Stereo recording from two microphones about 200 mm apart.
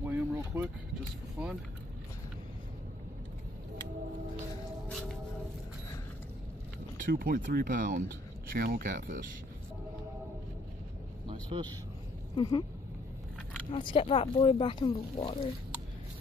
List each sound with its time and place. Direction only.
0.0 s vehicle: 10° right (ahead or behind)
1.4 s speech: 5° right (ahead or behind)
7.0 s speech: 45° right (ahead or behind)
11.2 s vehicle: 25° right (ahead or behind)
12.4 s speech: 20° left (ahead or behind)
13.7 s speech: 25° left (ahead or behind)